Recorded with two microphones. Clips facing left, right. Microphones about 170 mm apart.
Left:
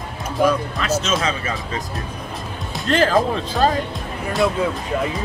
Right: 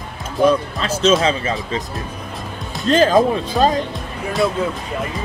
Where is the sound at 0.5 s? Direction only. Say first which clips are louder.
Right 2 dB; 30° right (ahead or behind).